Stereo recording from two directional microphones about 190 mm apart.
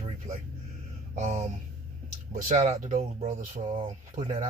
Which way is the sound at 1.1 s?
35° right (ahead or behind).